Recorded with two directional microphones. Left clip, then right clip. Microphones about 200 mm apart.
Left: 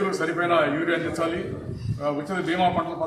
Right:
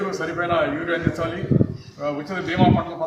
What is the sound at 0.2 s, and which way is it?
A man's voice, 15° right (ahead or behind).